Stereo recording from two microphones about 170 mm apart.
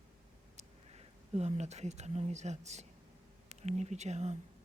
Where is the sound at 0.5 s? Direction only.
40° right (ahead or behind).